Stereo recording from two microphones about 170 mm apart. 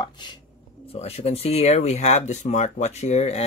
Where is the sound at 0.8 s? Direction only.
35° left (ahead or behind).